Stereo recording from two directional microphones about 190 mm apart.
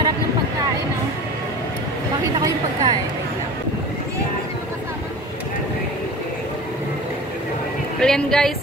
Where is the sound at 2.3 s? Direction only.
20° right (ahead or behind).